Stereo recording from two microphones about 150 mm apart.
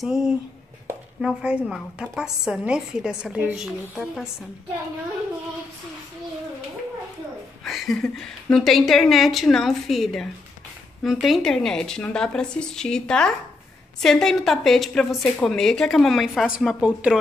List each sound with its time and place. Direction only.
0.0 s a woman's voice: 5° right (ahead or behind)
7.6 s a woman's voice: centre (ahead or behind)